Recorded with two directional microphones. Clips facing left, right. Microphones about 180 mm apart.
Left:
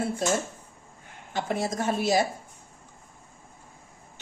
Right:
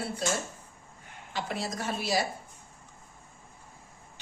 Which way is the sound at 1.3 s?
50° left (ahead or behind).